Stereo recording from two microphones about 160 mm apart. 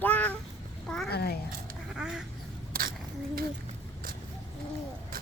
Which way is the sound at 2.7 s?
65° right (ahead or behind).